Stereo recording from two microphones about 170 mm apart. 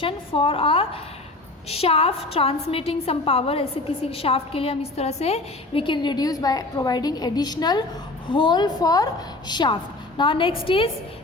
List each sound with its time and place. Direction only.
0.0 s a woman's voice: 30° left (ahead or behind)